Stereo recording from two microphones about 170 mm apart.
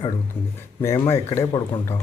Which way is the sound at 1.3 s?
15° left (ahead or behind).